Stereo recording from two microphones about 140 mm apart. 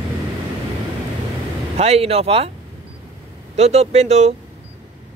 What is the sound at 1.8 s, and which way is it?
Speech, 50° right (ahead or behind).